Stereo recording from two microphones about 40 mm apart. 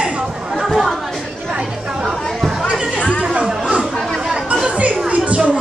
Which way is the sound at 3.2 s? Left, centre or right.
Right.